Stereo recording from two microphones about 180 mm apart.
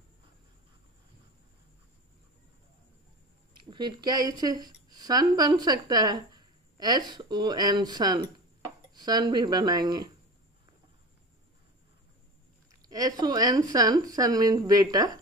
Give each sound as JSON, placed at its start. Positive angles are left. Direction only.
{"t": 3.5, "sound": "speech", "side_deg": -25}
{"t": 12.8, "sound": "speech", "side_deg": -20}